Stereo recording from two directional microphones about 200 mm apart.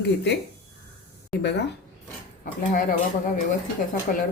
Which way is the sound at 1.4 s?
60° left (ahead or behind).